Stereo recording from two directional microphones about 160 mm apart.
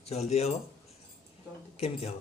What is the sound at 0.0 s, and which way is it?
Speech, 40° left (ahead or behind).